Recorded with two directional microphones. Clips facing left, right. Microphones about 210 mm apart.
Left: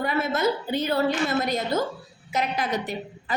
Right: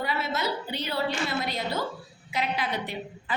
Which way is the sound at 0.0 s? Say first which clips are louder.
Left 6 dB; 50° left (ahead or behind).